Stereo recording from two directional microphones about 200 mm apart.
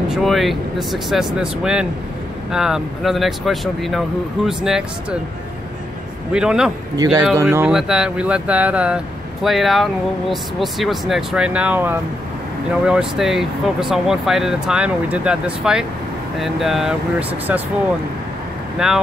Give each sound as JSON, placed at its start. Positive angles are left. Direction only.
{"t": 0.1, "sound": "speech", "side_deg": 0}
{"t": 6.3, "sound": "speech", "side_deg": -5}
{"t": 7.0, "sound": "speech", "side_deg": -20}
{"t": 7.4, "sound": "speech", "side_deg": -5}
{"t": 18.8, "sound": "speech", "side_deg": -5}